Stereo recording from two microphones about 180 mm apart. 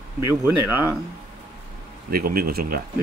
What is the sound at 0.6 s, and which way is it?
Speech, 15° right (ahead or behind).